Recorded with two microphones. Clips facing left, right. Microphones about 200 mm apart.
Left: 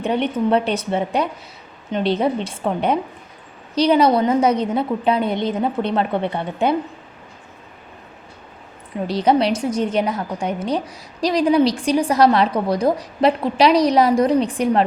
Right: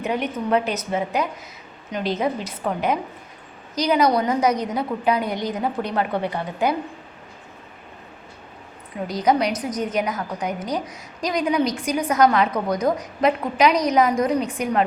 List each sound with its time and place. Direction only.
0.0 s a woman's voice: 30° left (ahead or behind)
9.0 s a woman's voice: 30° left (ahead or behind)